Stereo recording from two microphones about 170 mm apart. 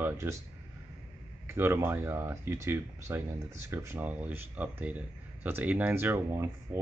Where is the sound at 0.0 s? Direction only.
15° right (ahead or behind).